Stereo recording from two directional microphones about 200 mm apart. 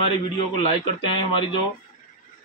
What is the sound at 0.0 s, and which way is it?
Speech, 25° left (ahead or behind).